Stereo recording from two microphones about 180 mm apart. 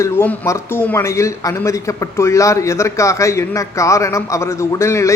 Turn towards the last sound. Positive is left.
turn(degrees=15)  # may be behind; listen again after turning